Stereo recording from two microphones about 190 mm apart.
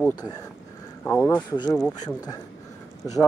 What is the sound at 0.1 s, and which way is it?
Speech, 20° left (ahead or behind).